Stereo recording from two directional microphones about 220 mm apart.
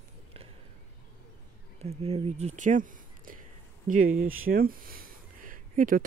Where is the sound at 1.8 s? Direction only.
25° right (ahead or behind).